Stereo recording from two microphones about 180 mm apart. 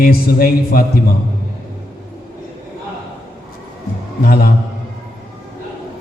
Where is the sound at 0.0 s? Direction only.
55° left (ahead or behind).